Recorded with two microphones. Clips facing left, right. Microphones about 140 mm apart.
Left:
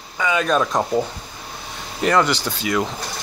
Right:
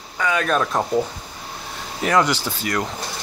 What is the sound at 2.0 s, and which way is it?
Speech, 10° right (ahead or behind).